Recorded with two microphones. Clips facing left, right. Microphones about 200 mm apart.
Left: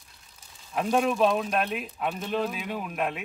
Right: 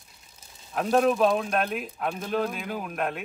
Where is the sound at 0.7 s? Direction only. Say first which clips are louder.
Right 3 dB; centre (ahead or behind).